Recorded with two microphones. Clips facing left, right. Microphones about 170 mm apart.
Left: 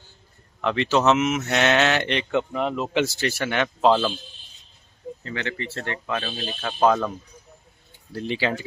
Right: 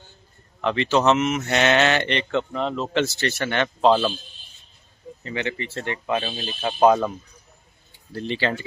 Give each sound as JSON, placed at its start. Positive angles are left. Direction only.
{"t": 0.6, "sound": "speech", "side_deg": 0}
{"t": 5.2, "sound": "speech", "side_deg": -15}
{"t": 8.1, "sound": "speech", "side_deg": 5}